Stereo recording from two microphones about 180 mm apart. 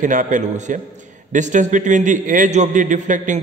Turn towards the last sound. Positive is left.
turn(degrees=-45)  # may be behind; listen again after turning